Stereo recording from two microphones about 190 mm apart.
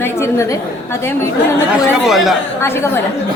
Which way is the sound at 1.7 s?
Centre (ahead or behind).